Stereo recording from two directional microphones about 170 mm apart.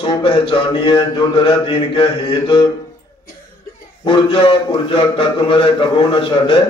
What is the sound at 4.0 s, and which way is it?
Speech, 30° left (ahead or behind).